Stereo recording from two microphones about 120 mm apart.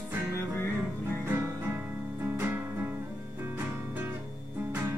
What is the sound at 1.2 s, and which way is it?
Music, 20° right (ahead or behind).